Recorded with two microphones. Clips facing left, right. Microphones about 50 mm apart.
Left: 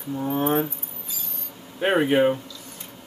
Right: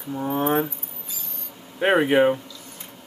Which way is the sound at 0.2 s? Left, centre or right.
Right.